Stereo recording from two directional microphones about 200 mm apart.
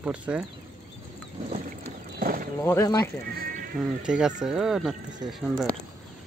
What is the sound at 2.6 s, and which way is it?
Speech, 10° left (ahead or behind).